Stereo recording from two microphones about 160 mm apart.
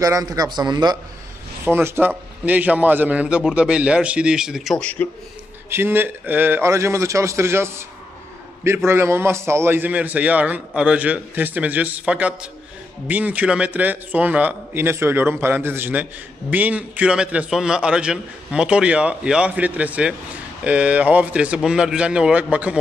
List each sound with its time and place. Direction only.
0.0 s a man's voice: 20° right (ahead or behind)
1.6 s a man's voice: 15° right (ahead or behind); by 5.0 s 5° left (ahead or behind)
5.7 s a man's voice: 15° right (ahead or behind)